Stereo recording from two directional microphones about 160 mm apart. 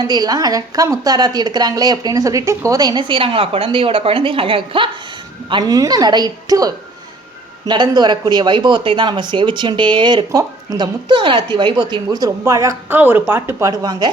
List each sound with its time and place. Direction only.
0.0 s speech: 25° right (ahead or behind)